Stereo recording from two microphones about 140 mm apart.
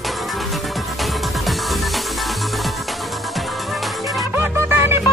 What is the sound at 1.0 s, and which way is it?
Music, centre (ahead or behind).